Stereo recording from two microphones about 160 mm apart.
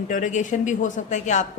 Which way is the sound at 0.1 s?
50° left (ahead or behind).